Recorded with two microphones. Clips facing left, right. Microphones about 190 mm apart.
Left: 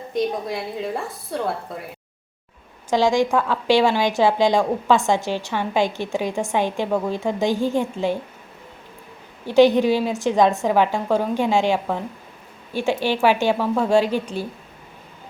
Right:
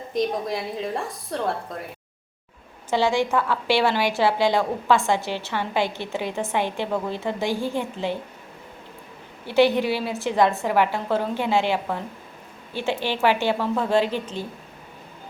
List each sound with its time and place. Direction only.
0.1 s a woman's voice: centre (ahead or behind)
2.9 s a woman's voice: 15° left (ahead or behind)
9.5 s a woman's voice: 15° left (ahead or behind)